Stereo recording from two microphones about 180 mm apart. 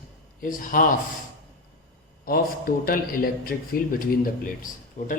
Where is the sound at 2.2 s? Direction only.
55° left (ahead or behind).